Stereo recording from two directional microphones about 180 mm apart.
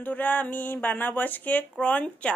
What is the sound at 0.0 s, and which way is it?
Speech, 10° left (ahead or behind).